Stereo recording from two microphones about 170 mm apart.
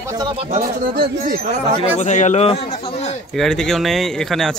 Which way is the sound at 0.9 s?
65° right (ahead or behind).